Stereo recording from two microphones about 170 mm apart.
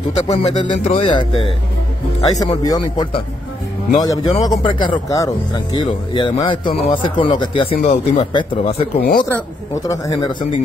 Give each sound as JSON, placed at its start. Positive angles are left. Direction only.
{"t": 0.3, "sound": "speech", "side_deg": 35}
{"t": 8.9, "sound": "speech", "side_deg": 70}
{"t": 9.8, "sound": "speech", "side_deg": 20}